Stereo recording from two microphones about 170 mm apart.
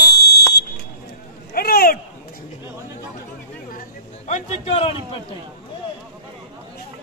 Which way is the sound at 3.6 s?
50° left (ahead or behind).